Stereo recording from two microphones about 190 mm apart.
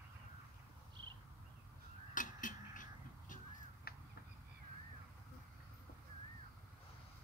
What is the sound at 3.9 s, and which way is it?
Finger snapping, 50° left (ahead or behind).